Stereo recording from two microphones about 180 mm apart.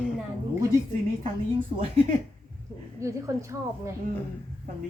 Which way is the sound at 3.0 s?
15° right (ahead or behind).